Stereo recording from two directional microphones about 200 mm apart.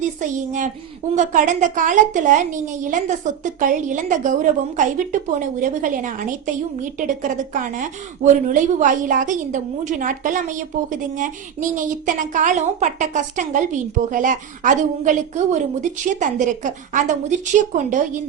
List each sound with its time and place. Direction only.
0.0 s a woman's voice: 40° right (ahead or behind)